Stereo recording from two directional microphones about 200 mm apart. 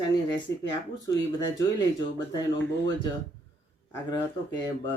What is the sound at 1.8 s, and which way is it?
Speech, 20° left (ahead or behind).